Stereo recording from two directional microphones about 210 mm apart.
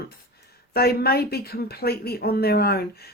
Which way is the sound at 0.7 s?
45° left (ahead or behind).